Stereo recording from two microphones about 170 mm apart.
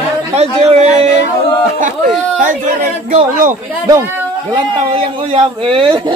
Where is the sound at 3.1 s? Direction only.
50° right (ahead or behind).